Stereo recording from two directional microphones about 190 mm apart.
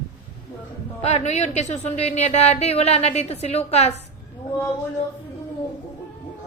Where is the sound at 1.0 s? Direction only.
35° left (ahead or behind).